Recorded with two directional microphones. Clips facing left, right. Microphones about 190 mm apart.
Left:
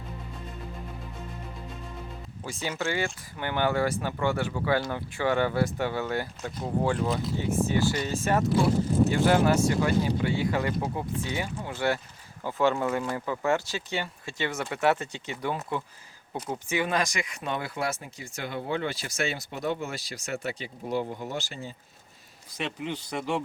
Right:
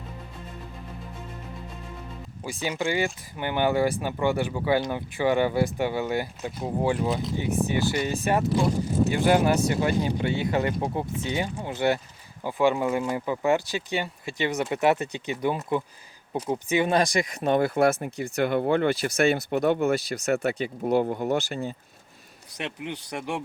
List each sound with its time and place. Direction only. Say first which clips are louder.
2.4 s speech: right 3 dB; 15° right (ahead or behind)
16.9 s speech: right 6 dB; 35° right (ahead or behind); by 21.7 s 60° right (ahead or behind)
22.5 s speech: left 1 dB; 15° right (ahead or behind)